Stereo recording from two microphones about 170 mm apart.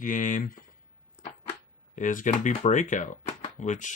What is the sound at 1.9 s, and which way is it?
Speech, 50° left (ahead or behind).